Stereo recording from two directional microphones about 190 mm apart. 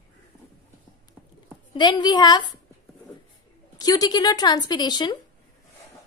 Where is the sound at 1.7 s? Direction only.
25° left (ahead or behind).